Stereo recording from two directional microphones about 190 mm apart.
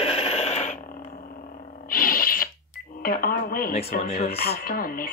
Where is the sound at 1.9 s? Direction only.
50° left (ahead or behind).